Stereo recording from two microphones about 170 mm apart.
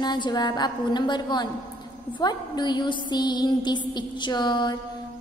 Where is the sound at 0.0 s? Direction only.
25° left (ahead or behind).